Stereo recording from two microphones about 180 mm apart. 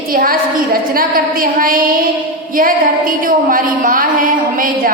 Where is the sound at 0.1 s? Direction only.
50° right (ahead or behind).